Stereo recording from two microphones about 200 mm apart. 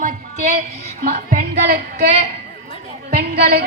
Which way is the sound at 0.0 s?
35° right (ahead or behind).